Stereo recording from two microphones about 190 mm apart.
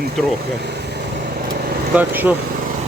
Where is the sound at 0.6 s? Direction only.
60° right (ahead or behind).